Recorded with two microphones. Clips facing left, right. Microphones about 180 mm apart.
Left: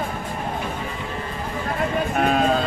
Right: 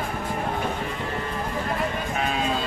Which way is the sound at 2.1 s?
55° left (ahead or behind).